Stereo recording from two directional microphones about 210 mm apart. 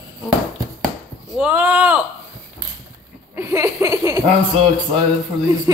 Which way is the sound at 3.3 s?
15° right (ahead or behind).